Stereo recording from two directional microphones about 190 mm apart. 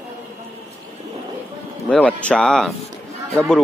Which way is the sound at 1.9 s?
5° left (ahead or behind).